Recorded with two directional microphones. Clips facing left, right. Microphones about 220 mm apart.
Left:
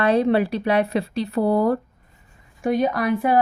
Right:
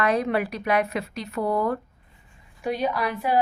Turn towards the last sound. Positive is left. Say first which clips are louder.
# left 5 dB
turn(degrees=50)  # may be behind; listen again after turning